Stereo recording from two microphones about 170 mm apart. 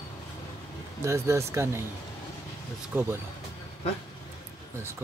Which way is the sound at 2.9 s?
15° right (ahead or behind).